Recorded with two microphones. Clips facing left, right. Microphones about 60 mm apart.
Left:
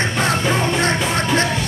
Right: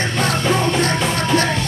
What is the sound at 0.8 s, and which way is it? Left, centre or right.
Music, left.